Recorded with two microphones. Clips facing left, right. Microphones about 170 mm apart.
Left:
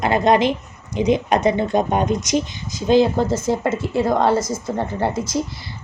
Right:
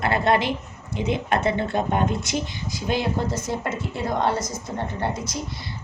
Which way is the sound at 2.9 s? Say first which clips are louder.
Left 9 dB; 90° left.